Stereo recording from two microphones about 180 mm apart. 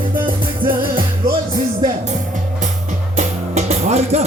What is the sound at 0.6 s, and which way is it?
Music, 25° right (ahead or behind).